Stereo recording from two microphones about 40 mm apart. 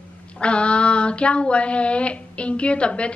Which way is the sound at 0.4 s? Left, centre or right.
Left.